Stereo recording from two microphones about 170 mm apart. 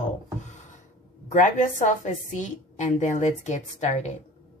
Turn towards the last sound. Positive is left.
turn(degrees=45)  # may be behind; listen again after turning